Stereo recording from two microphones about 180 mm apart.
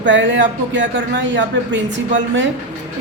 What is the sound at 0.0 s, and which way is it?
Speech, 90° right.